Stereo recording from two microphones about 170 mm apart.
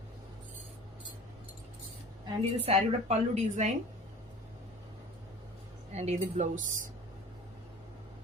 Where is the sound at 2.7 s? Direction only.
40° right (ahead or behind).